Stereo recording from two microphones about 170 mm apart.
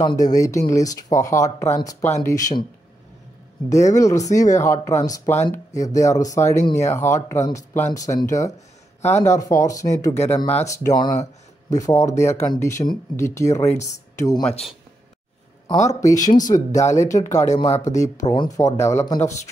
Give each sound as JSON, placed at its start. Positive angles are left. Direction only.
{"t": 0.0, "sound": "speech", "side_deg": 20}
{"t": 3.6, "sound": "speech", "side_deg": 20}
{"t": 15.7, "sound": "speech", "side_deg": 40}
{"t": 16.0, "sound": "speech", "side_deg": 20}
{"t": 16.3, "sound": "speech", "side_deg": 50}
{"t": 16.5, "sound": "speech", "side_deg": 20}
{"t": 17.6, "sound": "speech", "side_deg": 40}
{"t": 18.2, "sound": "speech", "side_deg": 25}